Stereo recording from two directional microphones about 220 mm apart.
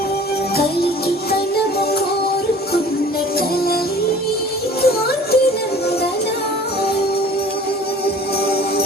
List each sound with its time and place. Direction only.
4.8 s music: 45° left (ahead or behind)